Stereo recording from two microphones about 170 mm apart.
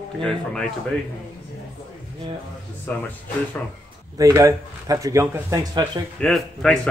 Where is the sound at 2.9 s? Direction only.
10° left (ahead or behind).